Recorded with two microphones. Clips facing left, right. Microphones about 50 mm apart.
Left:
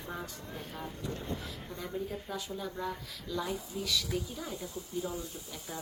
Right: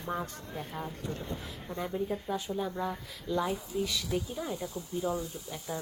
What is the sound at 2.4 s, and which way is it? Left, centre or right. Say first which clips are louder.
Speech: right 5 dB; right.